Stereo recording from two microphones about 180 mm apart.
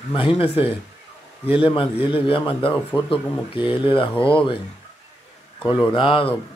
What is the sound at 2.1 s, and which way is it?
Speech, 30° left (ahead or behind).